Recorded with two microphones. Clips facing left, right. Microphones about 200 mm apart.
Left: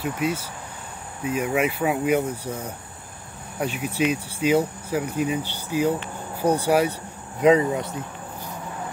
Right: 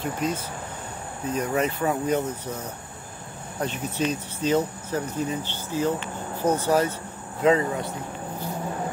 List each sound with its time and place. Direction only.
0.0 s speech: 10° left (ahead or behind)